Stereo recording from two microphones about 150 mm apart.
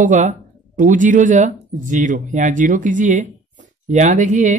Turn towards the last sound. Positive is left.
turn(degrees=-55)  # may be behind; listen again after turning